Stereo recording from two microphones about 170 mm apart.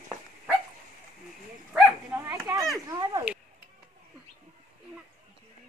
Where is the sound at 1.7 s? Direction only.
10° right (ahead or behind).